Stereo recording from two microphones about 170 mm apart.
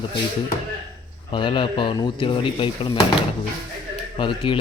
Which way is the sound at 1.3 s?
30° left (ahead or behind).